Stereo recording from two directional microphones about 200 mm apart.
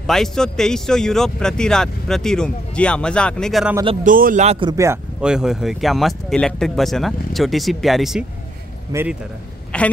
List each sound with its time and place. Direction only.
0.0 s speech: centre (ahead or behind)
4.0 s speech: 45° right (ahead or behind)
4.6 s speech: 15° right (ahead or behind)
5.2 s speech: 5° right (ahead or behind)
8.9 s speech: 15° right (ahead or behind)
9.7 s a sound: 5° left (ahead or behind)